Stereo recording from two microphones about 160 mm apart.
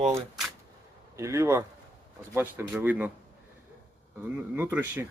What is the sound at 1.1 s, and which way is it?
Speech, 20° right (ahead or behind).